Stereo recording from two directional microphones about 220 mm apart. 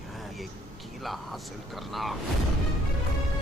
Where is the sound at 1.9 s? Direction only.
Centre (ahead or behind).